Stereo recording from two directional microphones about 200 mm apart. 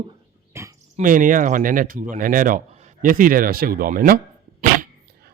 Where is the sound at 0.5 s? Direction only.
15° right (ahead or behind).